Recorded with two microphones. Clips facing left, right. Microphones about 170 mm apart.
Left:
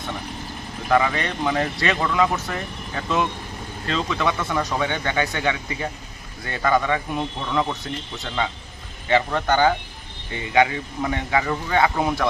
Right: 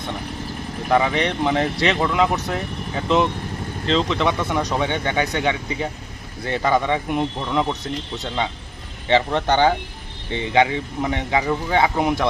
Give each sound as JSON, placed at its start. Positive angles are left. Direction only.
{"t": 0.9, "sound": "speech", "side_deg": -15}
{"t": 9.0, "sound": "speech", "side_deg": -25}